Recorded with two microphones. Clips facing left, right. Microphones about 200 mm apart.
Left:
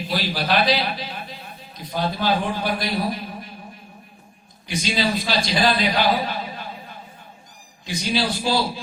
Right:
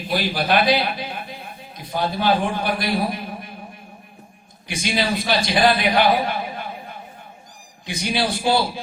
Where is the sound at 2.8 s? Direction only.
55° right (ahead or behind).